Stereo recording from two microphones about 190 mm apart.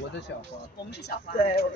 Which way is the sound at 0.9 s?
60° left (ahead or behind).